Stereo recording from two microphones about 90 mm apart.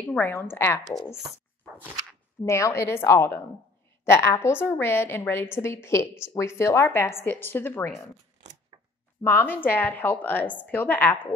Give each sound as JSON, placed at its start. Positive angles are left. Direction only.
{"t": 0.0, "sound": "a sound", "side_deg": 10}
{"t": 0.3, "sound": "a woman's voice", "side_deg": 25}
{"t": 2.4, "sound": "a woman's voice", "side_deg": 35}
{"t": 9.2, "sound": "a woman's voice", "side_deg": 25}